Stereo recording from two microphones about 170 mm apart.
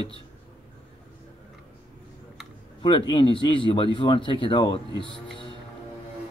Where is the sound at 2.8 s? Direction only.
30° left (ahead or behind).